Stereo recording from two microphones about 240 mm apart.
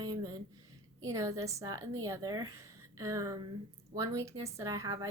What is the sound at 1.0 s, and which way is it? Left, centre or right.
A woman's voice, centre.